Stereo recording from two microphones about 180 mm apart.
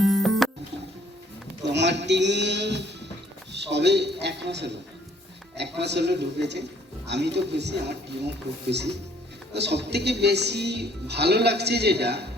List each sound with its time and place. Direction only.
0.0 s music: centre (ahead or behind)
1.6 s a man's voice: 75° right (ahead or behind)
9.5 s speech: 70° right (ahead or behind)